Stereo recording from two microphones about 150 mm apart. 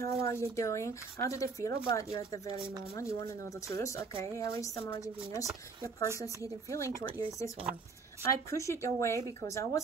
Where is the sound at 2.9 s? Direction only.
20° left (ahead or behind).